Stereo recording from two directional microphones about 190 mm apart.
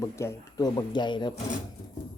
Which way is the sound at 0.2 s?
15° left (ahead or behind).